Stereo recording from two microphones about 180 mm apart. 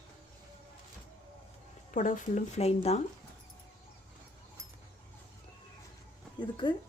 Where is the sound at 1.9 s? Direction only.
45° left (ahead or behind).